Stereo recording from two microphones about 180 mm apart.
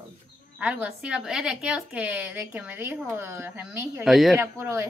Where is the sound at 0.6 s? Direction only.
5° right (ahead or behind).